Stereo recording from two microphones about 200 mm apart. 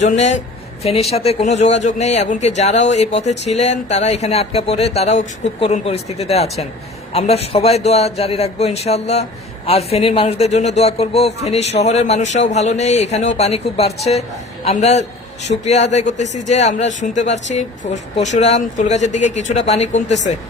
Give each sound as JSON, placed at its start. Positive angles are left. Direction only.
{"t": 0.0, "sound": "a man's voice", "side_deg": 35}